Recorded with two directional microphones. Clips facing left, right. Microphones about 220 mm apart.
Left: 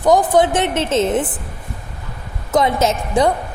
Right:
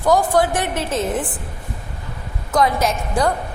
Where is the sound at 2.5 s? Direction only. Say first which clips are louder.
Left 2 dB; 25° left (ahead or behind).